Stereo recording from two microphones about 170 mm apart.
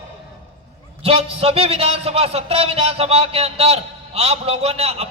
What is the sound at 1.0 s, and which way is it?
A man's voice, 35° right (ahead or behind).